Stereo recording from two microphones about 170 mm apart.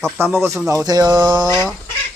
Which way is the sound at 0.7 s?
20° right (ahead or behind).